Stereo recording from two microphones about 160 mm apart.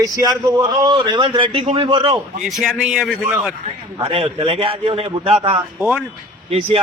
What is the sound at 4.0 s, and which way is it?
A man's voice, 35° right (ahead or behind).